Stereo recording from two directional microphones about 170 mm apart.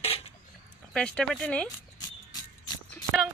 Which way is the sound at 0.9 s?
5° left (ahead or behind).